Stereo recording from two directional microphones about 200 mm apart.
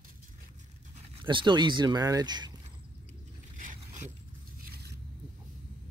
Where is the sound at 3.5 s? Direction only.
40° right (ahead or behind).